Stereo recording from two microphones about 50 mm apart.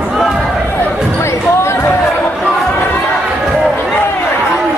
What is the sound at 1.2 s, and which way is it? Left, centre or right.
Music, left.